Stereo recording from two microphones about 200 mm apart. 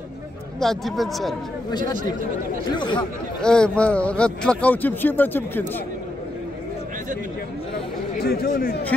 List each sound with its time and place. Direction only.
0.6 s a man's voice: centre (ahead or behind)
1.7 s speech: 20° left (ahead or behind)
3.4 s a man's voice: 5° left (ahead or behind)
8.2 s speech: 50° left (ahead or behind)